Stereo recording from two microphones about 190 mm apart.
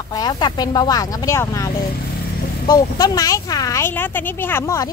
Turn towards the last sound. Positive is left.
turn(degrees=15)  # may be behind; listen again after turning